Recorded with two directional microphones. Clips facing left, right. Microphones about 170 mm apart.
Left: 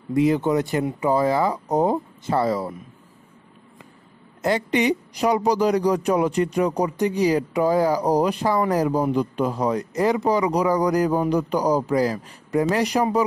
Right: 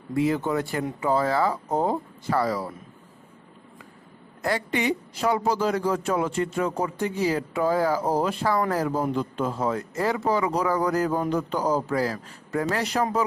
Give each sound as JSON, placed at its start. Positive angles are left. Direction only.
{"t": 0.1, "sound": "a man's voice", "side_deg": 20}
{"t": 4.4, "sound": "a man's voice", "side_deg": 20}